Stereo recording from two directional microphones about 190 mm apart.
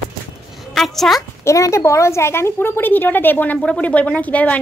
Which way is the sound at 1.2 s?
15° left (ahead or behind).